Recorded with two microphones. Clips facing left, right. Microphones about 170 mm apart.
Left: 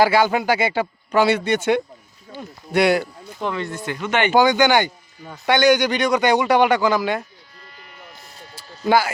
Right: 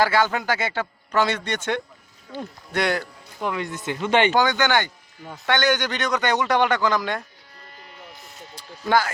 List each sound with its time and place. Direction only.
0.0 s a man's voice: 10° left (ahead or behind)
3.4 s speech: 10° right (ahead or behind); by 4.3 s 30° right (ahead or behind)
4.3 s a man's voice: 10° left (ahead or behind)
8.8 s a man's voice: 10° left (ahead or behind)